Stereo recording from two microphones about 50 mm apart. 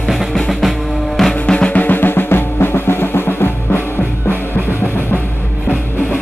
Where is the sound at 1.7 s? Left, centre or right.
Left.